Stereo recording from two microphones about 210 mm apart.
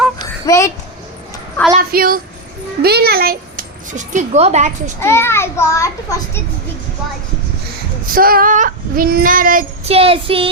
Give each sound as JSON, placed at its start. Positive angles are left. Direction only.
{"t": 0.4, "sound": "speech", "side_deg": 15}
{"t": 1.7, "sound": "a woman's voice", "side_deg": -45}
{"t": 4.9, "sound": "a child's voice", "side_deg": 10}
{"t": 8.1, "sound": "child singing", "side_deg": -45}
{"t": 9.9, "sound": "child singing", "side_deg": -25}